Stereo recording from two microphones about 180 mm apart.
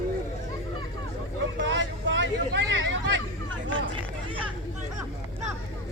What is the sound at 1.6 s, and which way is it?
Hubbub, 85° right.